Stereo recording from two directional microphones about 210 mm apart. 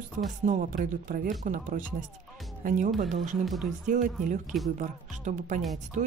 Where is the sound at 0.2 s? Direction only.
40° right (ahead or behind).